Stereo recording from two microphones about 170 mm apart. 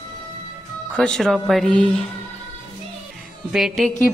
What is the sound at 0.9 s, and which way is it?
A woman's voice, 5° left (ahead or behind).